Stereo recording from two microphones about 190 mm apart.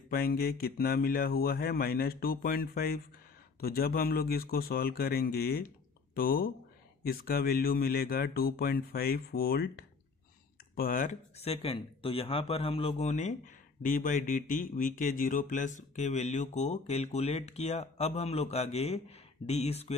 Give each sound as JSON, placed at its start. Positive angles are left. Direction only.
{"t": 0.1, "sound": "speech", "side_deg": 50}